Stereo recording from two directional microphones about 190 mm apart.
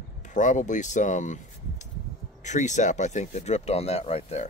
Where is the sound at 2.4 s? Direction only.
40° left (ahead or behind).